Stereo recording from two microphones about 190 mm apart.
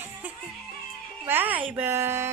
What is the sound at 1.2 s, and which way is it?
A woman's voice, 10° right (ahead or behind).